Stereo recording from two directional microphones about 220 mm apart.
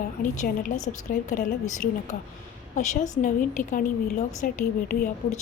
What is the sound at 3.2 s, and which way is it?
Speech, 35° left (ahead or behind).